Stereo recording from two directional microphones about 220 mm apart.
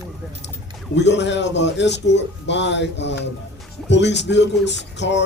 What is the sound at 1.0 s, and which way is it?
Speech, 50° left (ahead or behind).